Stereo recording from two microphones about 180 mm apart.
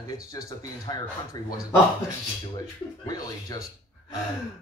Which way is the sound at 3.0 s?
20° left (ahead or behind).